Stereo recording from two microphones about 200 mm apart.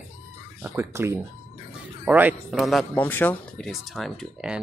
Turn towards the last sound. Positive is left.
turn(degrees=0)  # may be behind; listen again after turning